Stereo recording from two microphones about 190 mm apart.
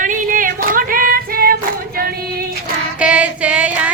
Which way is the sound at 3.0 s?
5° right (ahead or behind).